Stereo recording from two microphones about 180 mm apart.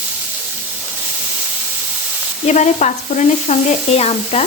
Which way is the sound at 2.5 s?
40° left (ahead or behind).